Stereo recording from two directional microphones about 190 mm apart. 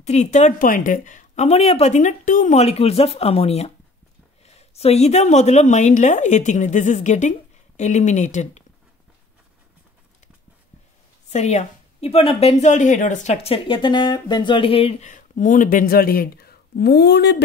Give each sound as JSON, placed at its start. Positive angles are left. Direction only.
{"t": 0.0, "sound": "a woman's voice", "side_deg": 35}
{"t": 11.2, "sound": "a woman's voice", "side_deg": 35}